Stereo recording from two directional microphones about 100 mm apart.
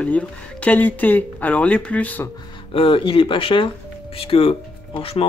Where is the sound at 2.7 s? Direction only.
65° left (ahead or behind).